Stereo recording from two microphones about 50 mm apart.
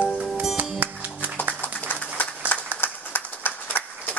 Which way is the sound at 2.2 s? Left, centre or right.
Left.